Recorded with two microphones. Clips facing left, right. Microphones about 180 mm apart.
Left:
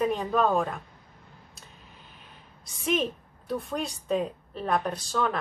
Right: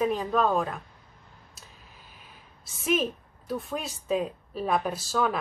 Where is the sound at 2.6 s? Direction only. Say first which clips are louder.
Right 1 dB; 5° right (ahead or behind).